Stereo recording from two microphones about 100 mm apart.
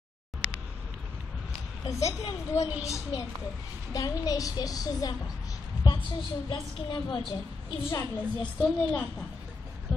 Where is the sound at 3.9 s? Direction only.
35° left (ahead or behind).